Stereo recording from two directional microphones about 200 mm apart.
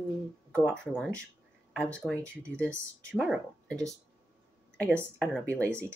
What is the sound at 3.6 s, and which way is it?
Speech, 15° right (ahead or behind).